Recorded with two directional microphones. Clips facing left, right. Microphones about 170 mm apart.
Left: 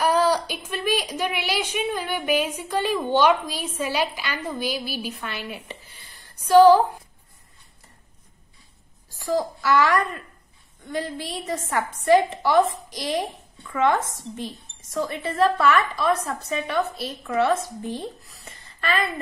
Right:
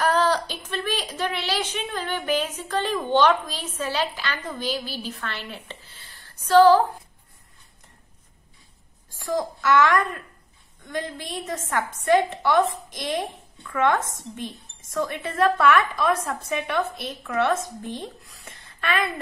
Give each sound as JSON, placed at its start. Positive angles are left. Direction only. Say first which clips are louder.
{"t": 0.0, "sound": "a woman's voice", "louder": "left 1 dB", "side_deg": 10}
{"t": 9.4, "sound": "a woman's voice", "louder": "right 2 dB", "side_deg": 5}
{"t": 14.0, "sound": "speech", "louder": "left 1 dB", "side_deg": -50}
{"t": 15.0, "sound": "a woman's voice", "louder": "left 1 dB", "side_deg": 5}